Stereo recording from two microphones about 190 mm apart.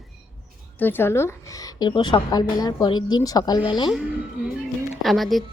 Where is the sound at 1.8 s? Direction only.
25° left (ahead or behind).